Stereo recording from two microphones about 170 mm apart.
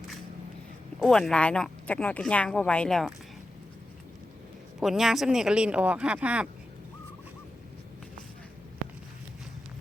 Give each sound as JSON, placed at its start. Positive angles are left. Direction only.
{"t": 0.9, "sound": "speech", "side_deg": 0}
{"t": 4.8, "sound": "speech", "side_deg": 0}